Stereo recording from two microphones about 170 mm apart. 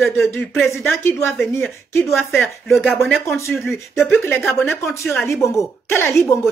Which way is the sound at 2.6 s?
Centre (ahead or behind).